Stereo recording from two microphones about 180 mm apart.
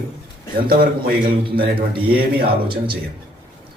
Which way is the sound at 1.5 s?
55° right (ahead or behind).